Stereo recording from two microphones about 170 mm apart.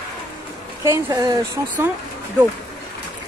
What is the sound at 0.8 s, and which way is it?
Speech, 20° right (ahead or behind).